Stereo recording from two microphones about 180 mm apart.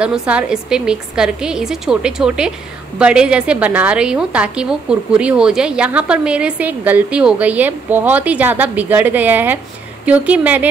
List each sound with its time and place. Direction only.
0.3 s a woman's voice: 5° right (ahead or behind)